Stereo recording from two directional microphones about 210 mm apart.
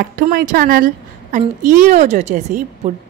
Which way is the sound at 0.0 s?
45° right (ahead or behind).